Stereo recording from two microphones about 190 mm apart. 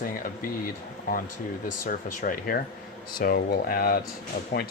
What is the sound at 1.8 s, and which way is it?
Speech, 45° left (ahead or behind).